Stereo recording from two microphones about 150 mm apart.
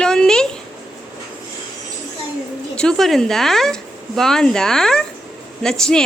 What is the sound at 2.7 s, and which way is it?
Speech, 5° left (ahead or behind).